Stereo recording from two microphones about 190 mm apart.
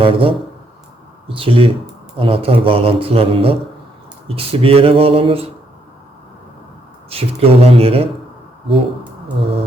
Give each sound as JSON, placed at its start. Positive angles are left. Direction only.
{"t": 0.0, "sound": "a man's voice", "side_deg": -30}
{"t": 1.4, "sound": "a man's voice", "side_deg": -30}
{"t": 7.1, "sound": "speech", "side_deg": -30}
{"t": 9.4, "sound": "a man's voice", "side_deg": -30}